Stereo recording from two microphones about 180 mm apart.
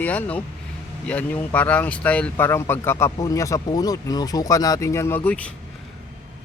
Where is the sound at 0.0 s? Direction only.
10° left (ahead or behind).